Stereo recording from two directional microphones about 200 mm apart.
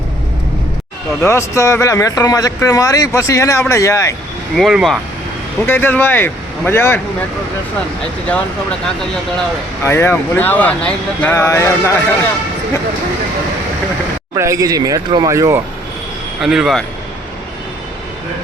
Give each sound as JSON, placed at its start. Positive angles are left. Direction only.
{"t": 1.2, "sound": "speech", "side_deg": 15}
{"t": 4.5, "sound": "speech", "side_deg": 0}
{"t": 5.6, "sound": "speech", "side_deg": 10}
{"t": 9.8, "sound": "speech", "side_deg": 10}
{"t": 14.3, "sound": "speech", "side_deg": -15}
{"t": 16.4, "sound": "speech", "side_deg": 0}